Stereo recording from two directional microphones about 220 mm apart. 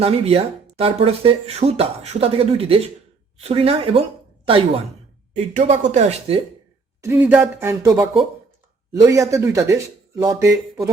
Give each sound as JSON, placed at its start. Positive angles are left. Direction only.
{"t": 0.0, "sound": "speech", "side_deg": -25}
{"t": 7.0, "sound": "speech", "side_deg": -10}